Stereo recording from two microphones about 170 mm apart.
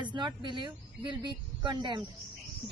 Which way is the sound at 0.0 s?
25° right (ahead or behind).